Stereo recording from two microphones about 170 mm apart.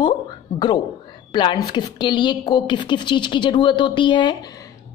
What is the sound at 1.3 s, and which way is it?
Speech, 25° left (ahead or behind).